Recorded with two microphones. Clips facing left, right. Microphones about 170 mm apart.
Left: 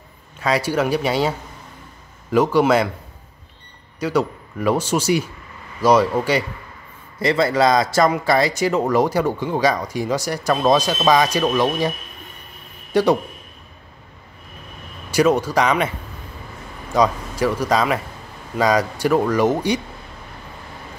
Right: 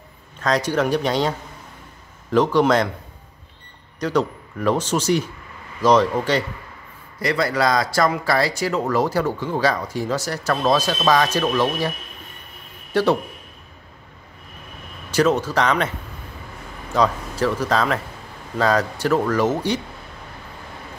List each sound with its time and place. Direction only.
0.4 s speech: 10° left (ahead or behind)
2.3 s speech: 10° left (ahead or behind)
4.0 s speech: 10° left (ahead or behind)
7.2 s speech: 25° left (ahead or behind)
12.9 s a man's voice: 15° left (ahead or behind)
15.0 s speech: 10° left (ahead or behind)
16.9 s speech: 15° left (ahead or behind)